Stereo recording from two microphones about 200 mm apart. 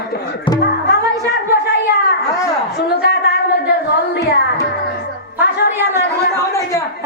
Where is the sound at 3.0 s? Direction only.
55° left (ahead or behind).